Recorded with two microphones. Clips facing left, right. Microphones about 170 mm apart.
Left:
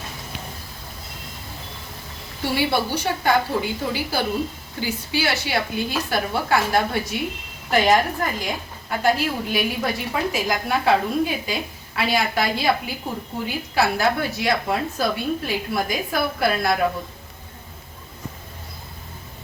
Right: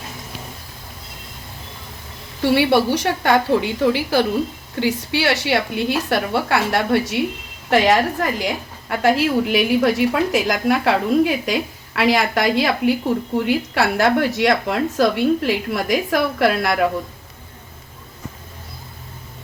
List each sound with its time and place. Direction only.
2.6 s a woman's voice: 75° right (ahead or behind)